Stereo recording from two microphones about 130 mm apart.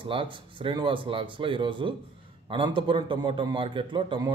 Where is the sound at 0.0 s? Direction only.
40° right (ahead or behind).